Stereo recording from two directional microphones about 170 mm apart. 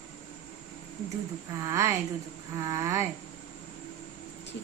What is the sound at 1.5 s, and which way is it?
A woman's voice, 20° right (ahead or behind).